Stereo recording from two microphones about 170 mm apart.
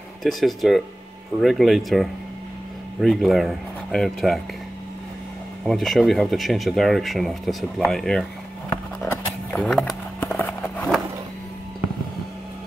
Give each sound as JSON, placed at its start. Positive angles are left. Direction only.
{"t": 0.2, "sound": "speech", "side_deg": 0}
{"t": 5.7, "sound": "speech", "side_deg": 0}
{"t": 9.0, "sound": "a sound", "side_deg": 5}